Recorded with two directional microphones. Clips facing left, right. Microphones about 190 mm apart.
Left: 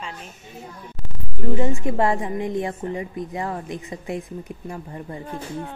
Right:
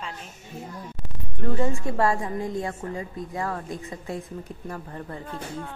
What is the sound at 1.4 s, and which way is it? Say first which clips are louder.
A woman's voice: left 3 dB; 20° left (ahead or behind).